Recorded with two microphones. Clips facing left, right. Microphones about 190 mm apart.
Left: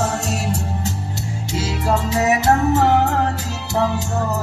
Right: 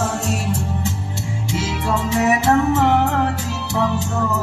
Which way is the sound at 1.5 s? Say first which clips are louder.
Left 2 dB; 40° left (ahead or behind).